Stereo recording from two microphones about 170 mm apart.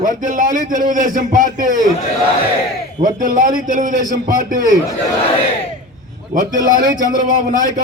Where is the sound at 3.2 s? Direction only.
50° right (ahead or behind).